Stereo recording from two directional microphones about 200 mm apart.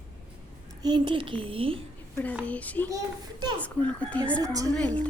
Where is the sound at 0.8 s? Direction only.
20° right (ahead or behind).